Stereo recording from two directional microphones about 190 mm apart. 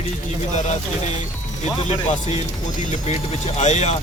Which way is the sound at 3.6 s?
35° left (ahead or behind).